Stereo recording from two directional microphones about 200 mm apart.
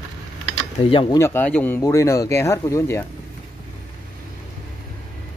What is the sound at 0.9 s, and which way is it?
Speech, 25° left (ahead or behind).